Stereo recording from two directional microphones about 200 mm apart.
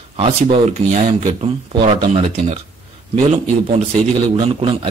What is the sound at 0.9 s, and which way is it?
A man's voice, 30° right (ahead or behind).